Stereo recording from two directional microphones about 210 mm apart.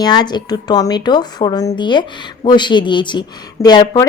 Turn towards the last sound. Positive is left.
turn(degrees=20)  # may be behind; listen again after turning